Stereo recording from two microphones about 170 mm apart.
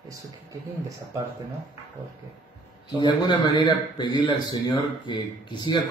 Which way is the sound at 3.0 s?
25° left (ahead or behind).